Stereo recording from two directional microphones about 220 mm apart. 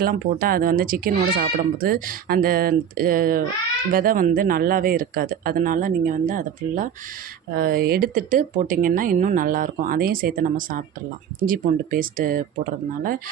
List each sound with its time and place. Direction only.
0.0 s speech: 40° right (ahead or behind)